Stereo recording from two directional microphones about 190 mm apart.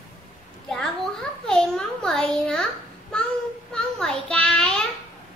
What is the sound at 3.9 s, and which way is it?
Child singing, 5° left (ahead or behind).